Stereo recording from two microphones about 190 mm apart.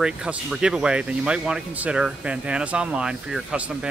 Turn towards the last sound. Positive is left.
turn(degrees=-5)  # may be behind; listen again after turning